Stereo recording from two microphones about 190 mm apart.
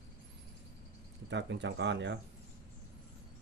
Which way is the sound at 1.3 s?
65° right (ahead or behind).